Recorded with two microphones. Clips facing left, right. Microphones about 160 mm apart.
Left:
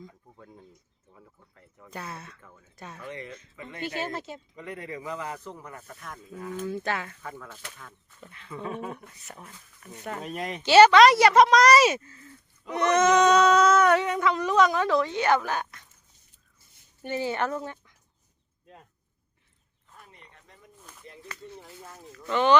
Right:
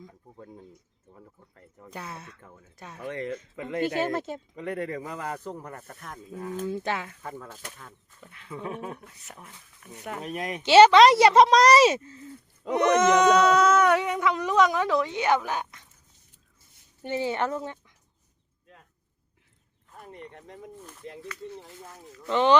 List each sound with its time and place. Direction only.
1.1 s a sound: 35° right (ahead or behind)
1.9 s speech: 15° right (ahead or behind)
3.1 s speech: 55° right (ahead or behind)
6.3 s speech: 30° right (ahead or behind)
6.7 s speech: 15° right (ahead or behind)
7.2 s speech: 35° right (ahead or behind)
8.3 s speech: 5° right (ahead or behind)
10.6 s a woman's voice: 20° right (ahead or behind)
17.0 s a woman's voice: 20° right (ahead or behind)
20.1 s a sound: 60° right (ahead or behind)
20.7 s a sound: centre (ahead or behind)
21.8 s speech: centre (ahead or behind)
22.3 s a woman's voice: 25° right (ahead or behind)